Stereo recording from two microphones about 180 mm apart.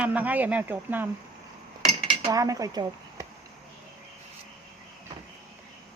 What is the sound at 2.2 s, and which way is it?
Speech, 20° right (ahead or behind).